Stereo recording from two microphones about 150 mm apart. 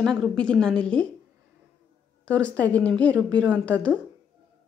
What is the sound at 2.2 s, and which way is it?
A woman's voice, 10° left (ahead or behind).